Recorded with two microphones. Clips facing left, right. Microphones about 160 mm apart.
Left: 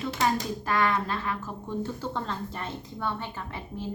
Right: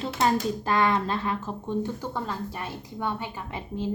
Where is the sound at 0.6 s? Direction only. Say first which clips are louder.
Right 1 dB; 20° right (ahead or behind).